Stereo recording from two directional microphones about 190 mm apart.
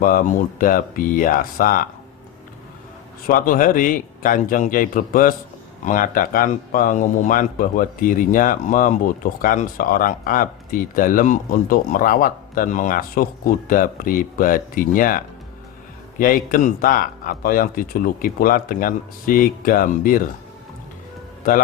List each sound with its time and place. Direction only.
0.0 s speech: 45° left (ahead or behind)
3.2 s speech: 45° left (ahead or behind)